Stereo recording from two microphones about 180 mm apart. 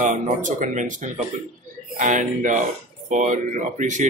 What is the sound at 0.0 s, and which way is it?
A man's voice, 45° right (ahead or behind).